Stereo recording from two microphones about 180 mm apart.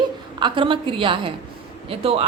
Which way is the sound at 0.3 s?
25° right (ahead or behind).